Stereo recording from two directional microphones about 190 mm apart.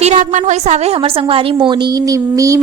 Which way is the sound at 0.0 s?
40° right (ahead or behind).